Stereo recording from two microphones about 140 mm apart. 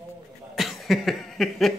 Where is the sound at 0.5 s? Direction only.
Centre (ahead or behind).